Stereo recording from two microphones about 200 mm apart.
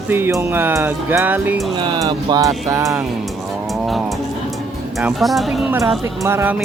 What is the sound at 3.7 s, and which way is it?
Music, centre (ahead or behind).